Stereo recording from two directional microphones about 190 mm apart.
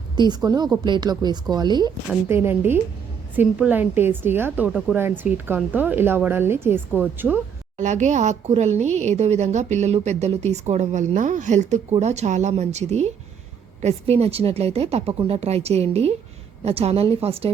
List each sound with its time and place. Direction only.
0.2 s speech: 20° right (ahead or behind)
2.3 s a woman's voice: 10° right (ahead or behind)
7.8 s a woman's voice: 40° right (ahead or behind)